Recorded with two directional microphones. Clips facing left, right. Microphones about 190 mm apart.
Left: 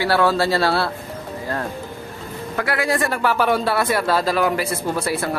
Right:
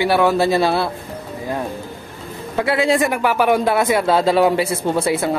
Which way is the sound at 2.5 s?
25° right (ahead or behind).